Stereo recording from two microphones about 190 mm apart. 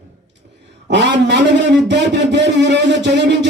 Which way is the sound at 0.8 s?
65° right (ahead or behind).